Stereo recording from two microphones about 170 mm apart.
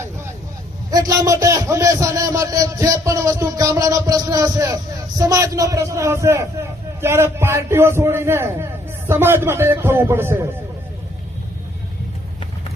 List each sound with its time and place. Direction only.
0.9 s a man's voice: 20° right (ahead or behind)